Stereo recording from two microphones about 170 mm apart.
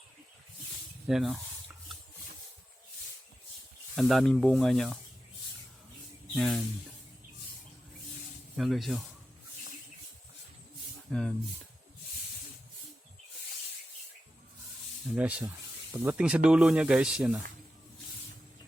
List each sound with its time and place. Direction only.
1.0 s a sound: centre (ahead or behind)
3.9 s speech: centre (ahead or behind)
6.3 s speech: centre (ahead or behind)
8.5 s speech: centre (ahead or behind)
11.1 s speech: 5° left (ahead or behind)
15.1 s speech: 5° right (ahead or behind)